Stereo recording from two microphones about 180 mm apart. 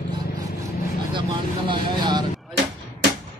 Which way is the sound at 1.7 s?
25° right (ahead or behind).